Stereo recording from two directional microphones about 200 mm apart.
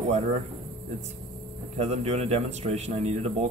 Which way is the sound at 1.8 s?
35° right (ahead or behind).